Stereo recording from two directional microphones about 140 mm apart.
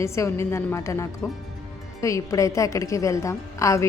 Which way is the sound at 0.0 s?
20° left (ahead or behind).